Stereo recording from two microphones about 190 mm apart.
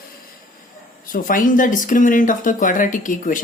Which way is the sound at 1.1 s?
45° left (ahead or behind).